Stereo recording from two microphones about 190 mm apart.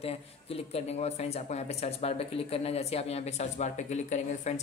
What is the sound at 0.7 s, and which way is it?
Speech, 35° left (ahead or behind).